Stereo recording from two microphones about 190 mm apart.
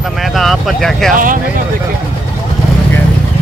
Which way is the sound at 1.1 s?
45° right (ahead or behind).